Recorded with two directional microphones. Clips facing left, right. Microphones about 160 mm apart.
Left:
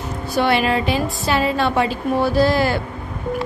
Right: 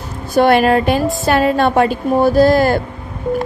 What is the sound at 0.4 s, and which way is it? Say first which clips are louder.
A woman's voice: right 7 dB; 50° right (ahead or behind).